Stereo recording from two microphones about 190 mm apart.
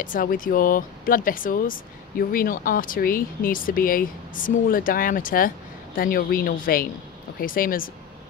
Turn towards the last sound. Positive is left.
turn(degrees=50)  # may be behind; listen again after turning